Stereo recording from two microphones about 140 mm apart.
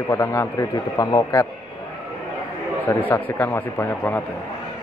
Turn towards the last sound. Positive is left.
turn(degrees=15)  # may be behind; listen again after turning